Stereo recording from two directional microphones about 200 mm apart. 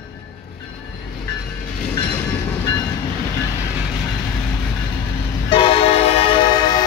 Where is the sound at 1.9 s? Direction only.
15° left (ahead or behind).